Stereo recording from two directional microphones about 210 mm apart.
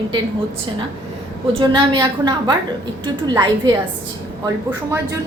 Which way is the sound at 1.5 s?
25° right (ahead or behind).